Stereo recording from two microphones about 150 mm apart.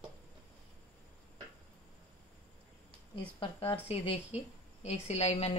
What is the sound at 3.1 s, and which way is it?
A woman's voice, 35° left (ahead or behind).